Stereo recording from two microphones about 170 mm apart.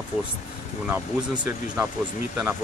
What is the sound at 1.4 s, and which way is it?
Speech, 10° right (ahead or behind).